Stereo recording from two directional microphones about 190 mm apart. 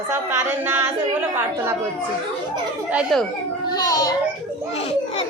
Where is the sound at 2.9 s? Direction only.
5° right (ahead or behind).